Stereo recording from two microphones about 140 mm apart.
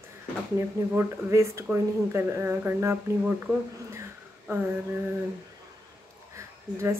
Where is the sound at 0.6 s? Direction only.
20° right (ahead or behind).